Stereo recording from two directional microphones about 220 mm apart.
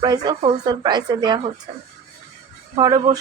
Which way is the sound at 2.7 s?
15° right (ahead or behind).